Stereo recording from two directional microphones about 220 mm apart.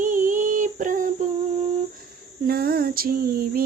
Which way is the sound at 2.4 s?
45° right (ahead or behind).